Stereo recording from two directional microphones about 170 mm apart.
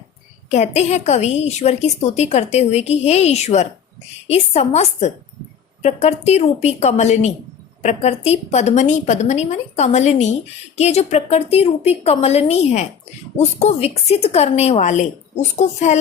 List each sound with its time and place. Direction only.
0.5 s a woman's voice: 40° left (ahead or behind)